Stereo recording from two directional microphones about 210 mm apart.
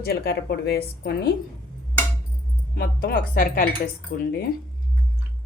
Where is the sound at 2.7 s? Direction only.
45° left (ahead or behind).